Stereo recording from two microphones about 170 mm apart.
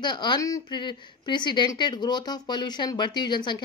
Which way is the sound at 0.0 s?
25° left (ahead or behind).